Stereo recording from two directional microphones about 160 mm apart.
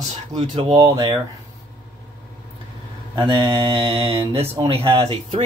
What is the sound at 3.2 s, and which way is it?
Speech, 30° right (ahead or behind).